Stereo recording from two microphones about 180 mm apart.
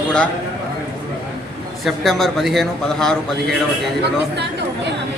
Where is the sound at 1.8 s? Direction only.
Centre (ahead or behind).